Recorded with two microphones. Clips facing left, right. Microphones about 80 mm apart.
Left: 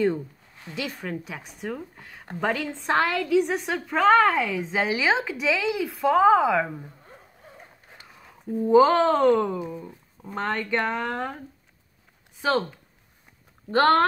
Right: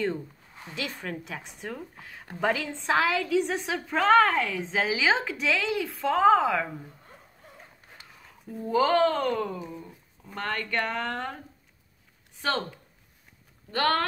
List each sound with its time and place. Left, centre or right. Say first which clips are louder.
0.7 s a woman's voice: left 3 dB; centre
8.5 s speech: left 6 dB; left
9.6 s speech: left 6 dB; centre
12.4 s speech: left 5 dB; centre
13.7 s speech: left 7 dB; left